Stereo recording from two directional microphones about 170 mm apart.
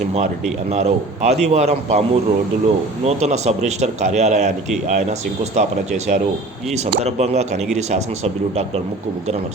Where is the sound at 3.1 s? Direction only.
40° right (ahead or behind).